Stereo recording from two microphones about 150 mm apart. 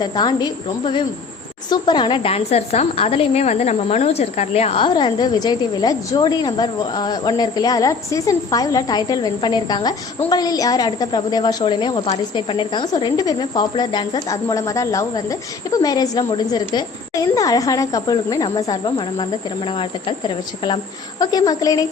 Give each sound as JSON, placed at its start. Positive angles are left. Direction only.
{"t": 0.0, "sound": "a woman's voice", "side_deg": 30}